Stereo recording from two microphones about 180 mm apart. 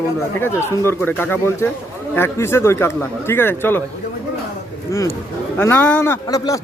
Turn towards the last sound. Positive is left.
turn(degrees=20)  # may be behind; listen again after turning